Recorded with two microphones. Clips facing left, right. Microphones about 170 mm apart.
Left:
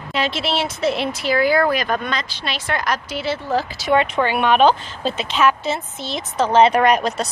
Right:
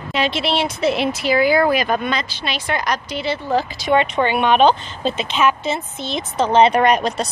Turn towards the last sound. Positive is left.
turn(degrees=5)  # may be behind; listen again after turning